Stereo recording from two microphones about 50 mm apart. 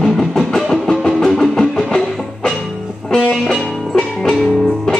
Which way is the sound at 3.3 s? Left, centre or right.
Centre.